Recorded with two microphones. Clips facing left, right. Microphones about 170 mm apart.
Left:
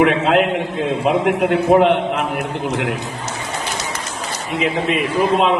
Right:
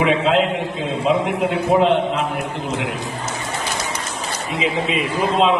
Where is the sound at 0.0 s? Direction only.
60° left (ahead or behind).